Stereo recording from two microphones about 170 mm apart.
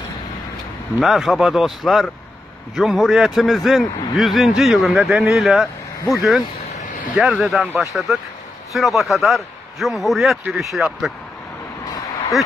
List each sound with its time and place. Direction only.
0.9 s a man's voice: centre (ahead or behind)